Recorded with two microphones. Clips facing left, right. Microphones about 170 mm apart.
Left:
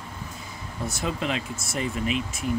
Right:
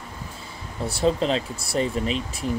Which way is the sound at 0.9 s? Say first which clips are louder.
Right 7 dB; 30° right (ahead or behind).